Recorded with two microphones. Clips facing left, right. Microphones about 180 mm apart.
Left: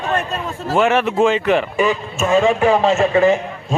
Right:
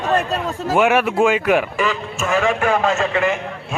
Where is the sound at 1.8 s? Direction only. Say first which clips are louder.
Left 4 dB; 25° left (ahead or behind).